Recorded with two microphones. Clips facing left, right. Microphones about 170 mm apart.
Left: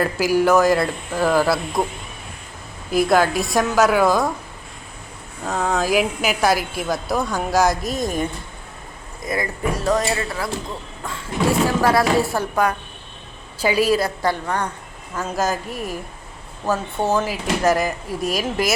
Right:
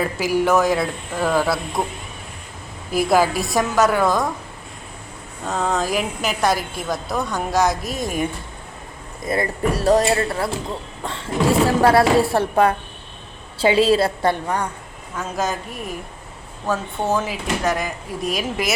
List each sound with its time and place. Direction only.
0.0 s a woman's voice: centre (ahead or behind)
5.5 s a woman's voice: centre (ahead or behind)
9.2 s a woman's voice: 30° right (ahead or behind)
11.6 s a woman's voice: 30° right (ahead or behind)
14.4 s speech: 10° right (ahead or behind)
15.1 s a woman's voice: centre (ahead or behind)